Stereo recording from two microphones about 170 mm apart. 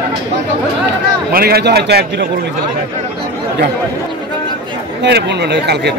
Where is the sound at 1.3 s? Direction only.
65° right (ahead or behind).